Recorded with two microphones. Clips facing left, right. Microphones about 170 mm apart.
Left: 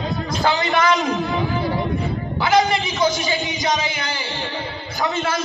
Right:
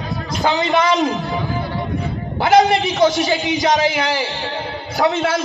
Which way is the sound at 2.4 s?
70° right (ahead or behind).